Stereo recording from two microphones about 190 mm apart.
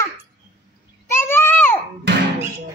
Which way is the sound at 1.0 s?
15° left (ahead or behind).